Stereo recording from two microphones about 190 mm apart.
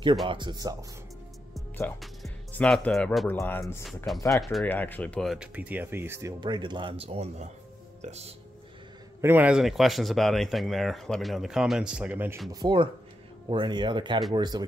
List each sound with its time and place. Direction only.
0.3 s speech: 25° right (ahead or behind)
2.2 s speech: 5° left (ahead or behind)
3.8 s speech: centre (ahead or behind); by 8.3 s 35° right (ahead or behind)
9.2 s speech: 10° right (ahead or behind)
12.4 s speech: 20° right (ahead or behind)